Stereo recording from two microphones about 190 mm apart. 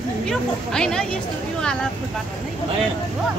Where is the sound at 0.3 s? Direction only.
5° left (ahead or behind).